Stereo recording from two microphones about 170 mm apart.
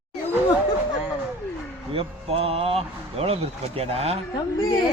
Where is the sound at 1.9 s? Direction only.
35° right (ahead or behind).